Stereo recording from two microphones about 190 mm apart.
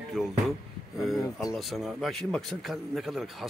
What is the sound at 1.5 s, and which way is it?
A man's voice, centre (ahead or behind).